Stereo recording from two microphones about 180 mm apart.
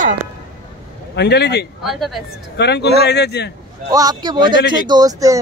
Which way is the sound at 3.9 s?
20° right (ahead or behind).